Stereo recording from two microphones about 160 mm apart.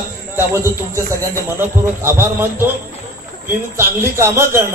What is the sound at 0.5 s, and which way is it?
A man's voice, 20° right (ahead or behind).